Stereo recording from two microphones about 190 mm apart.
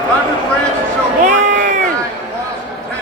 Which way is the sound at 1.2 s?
40° right (ahead or behind).